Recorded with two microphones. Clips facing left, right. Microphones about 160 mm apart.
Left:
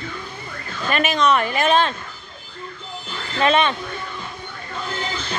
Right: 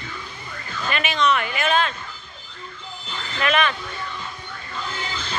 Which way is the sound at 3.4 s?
25° left (ahead or behind).